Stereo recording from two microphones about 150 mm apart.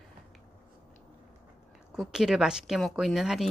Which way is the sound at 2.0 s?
Centre (ahead or behind).